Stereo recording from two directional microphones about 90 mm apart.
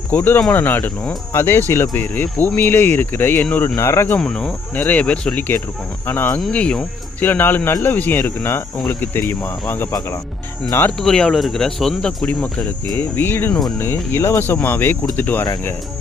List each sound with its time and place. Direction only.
0.1 s speech: 20° left (ahead or behind)
4.2 s speech: 10° left (ahead or behind)
4.7 s speech: 20° left (ahead or behind)
6.5 s speech: 10° left (ahead or behind)
7.3 s speech: 20° left (ahead or behind)
10.9 s speech: 5° left (ahead or behind); by 13.5 s 25° left (ahead or behind)
13.5 s speech: 5° left (ahead or behind)
13.7 s speech: 25° left (ahead or behind)